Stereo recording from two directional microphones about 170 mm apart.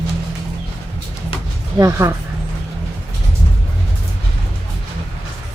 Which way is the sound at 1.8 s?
15° right (ahead or behind).